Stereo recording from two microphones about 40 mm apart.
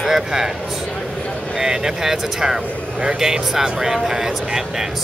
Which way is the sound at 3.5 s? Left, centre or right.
Centre.